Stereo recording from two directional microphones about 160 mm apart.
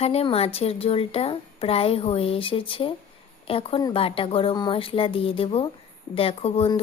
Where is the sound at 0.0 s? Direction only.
40° left (ahead or behind).